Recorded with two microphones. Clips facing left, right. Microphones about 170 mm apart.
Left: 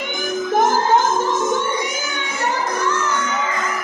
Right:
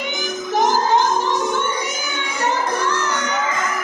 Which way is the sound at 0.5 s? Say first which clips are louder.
Left 1 dB; 50° left (ahead or behind).